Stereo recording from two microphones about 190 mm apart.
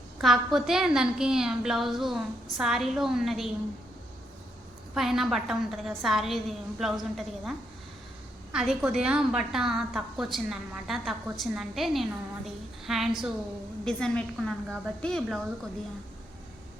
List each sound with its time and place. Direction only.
0.2 s a woman's voice: centre (ahead or behind)
4.9 s a woman's voice: centre (ahead or behind)
8.5 s a woman's voice: centre (ahead or behind)